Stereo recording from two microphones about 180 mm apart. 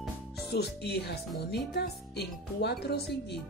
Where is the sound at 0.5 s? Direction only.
65° left (ahead or behind).